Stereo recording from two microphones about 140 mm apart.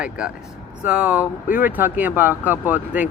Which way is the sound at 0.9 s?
10° right (ahead or behind).